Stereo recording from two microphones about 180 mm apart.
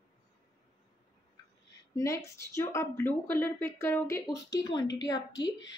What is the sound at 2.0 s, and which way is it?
A woman's voice, 15° left (ahead or behind).